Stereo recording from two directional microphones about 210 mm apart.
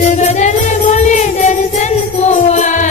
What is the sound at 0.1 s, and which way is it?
Music, 35° left (ahead or behind).